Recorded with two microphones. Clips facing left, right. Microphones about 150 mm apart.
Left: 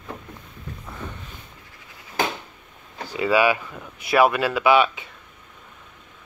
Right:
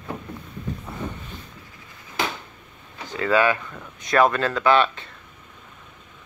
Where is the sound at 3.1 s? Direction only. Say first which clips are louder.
Left 1 dB; 10° left (ahead or behind).